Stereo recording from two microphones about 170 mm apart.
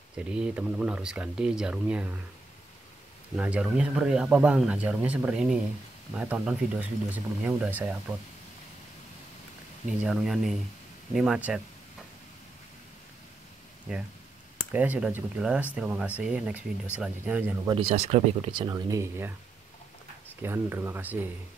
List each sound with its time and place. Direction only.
0.2 s speech: 5° right (ahead or behind)
3.3 s speech: 5° right (ahead or behind)
9.8 s speech: 5° right (ahead or behind)
14.7 s speech: 10° right (ahead or behind)
17.6 s speech: 30° right (ahead or behind); by 19.3 s 15° right (ahead or behind)
20.4 s speech: 15° right (ahead or behind)